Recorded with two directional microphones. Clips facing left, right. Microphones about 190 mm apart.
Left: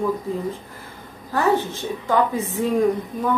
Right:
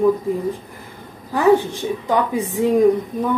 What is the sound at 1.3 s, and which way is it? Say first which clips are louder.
A woman's voice: right 5 dB; 15° right (ahead or behind).